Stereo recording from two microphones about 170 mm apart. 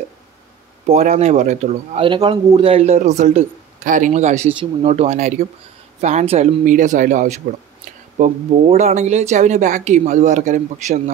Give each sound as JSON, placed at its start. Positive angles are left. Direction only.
{"t": 1.1, "sound": "a man's voice", "side_deg": -40}
{"t": 2.0, "sound": "a man's voice", "side_deg": -30}